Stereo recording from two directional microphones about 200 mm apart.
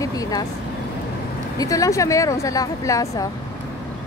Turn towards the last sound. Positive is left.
turn(degrees=15)  # may be behind; listen again after turning